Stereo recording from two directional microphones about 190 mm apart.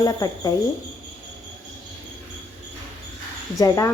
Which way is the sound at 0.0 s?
20° left (ahead or behind).